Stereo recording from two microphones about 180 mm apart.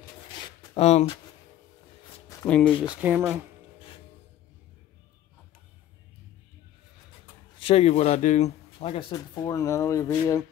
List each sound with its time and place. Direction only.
0.7 s speech: 35° left (ahead or behind)
2.4 s speech: 5° left (ahead or behind)
2.9 s speech: 10° right (ahead or behind)
7.5 s speech: 30° left (ahead or behind); by 10.4 s 15° left (ahead or behind)